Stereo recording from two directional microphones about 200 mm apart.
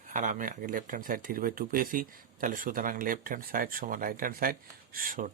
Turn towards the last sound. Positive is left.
turn(degrees=-45)  # may be behind; listen again after turning